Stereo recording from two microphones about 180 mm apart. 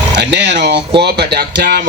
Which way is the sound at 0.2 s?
75° right (ahead or behind).